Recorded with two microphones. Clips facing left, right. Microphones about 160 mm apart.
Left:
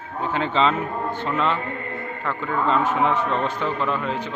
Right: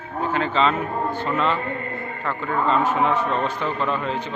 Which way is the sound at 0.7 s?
10° right (ahead or behind).